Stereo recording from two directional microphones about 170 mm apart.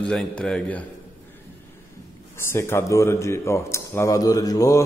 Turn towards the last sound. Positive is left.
turn(degrees=20)  # may be behind; listen again after turning